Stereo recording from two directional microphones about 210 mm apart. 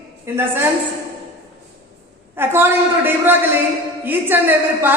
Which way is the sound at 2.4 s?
10° right (ahead or behind).